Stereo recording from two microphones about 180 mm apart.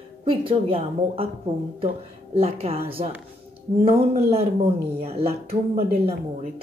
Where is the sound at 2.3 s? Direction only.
35° right (ahead or behind).